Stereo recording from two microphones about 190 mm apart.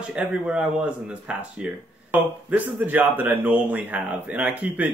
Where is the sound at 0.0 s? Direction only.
5° right (ahead or behind).